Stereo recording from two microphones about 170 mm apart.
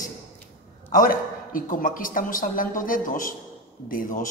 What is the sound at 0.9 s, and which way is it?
A man's voice, 55° left (ahead or behind).